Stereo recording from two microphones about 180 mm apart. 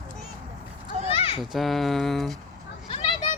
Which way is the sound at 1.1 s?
35° left (ahead or behind).